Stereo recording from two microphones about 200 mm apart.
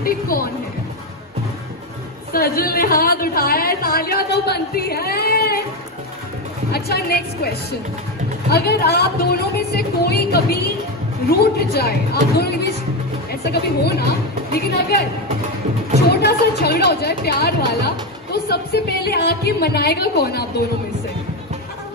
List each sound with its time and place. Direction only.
0.0 s speech: 45° left (ahead or behind)
2.3 s speech: 50° left (ahead or behind)
6.7 s speech: 50° left (ahead or behind)
16.1 s speech: 55° left (ahead or behind)